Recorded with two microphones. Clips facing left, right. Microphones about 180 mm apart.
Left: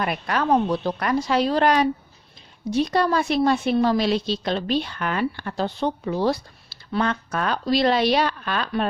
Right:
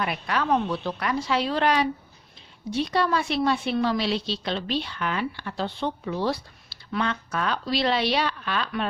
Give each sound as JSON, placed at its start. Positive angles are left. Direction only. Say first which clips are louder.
{"t": 0.0, "sound": "a woman's voice", "louder": "left 3 dB", "side_deg": 45}